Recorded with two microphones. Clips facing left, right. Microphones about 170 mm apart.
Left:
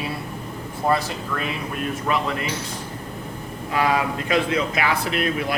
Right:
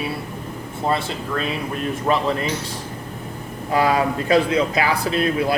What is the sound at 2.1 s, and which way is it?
Speech, 35° right (ahead or behind).